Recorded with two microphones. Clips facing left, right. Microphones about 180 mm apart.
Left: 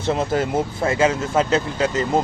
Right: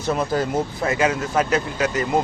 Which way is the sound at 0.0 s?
25° left (ahead or behind).